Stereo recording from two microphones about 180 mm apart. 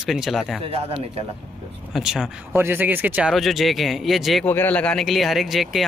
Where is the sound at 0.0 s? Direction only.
Centre (ahead or behind).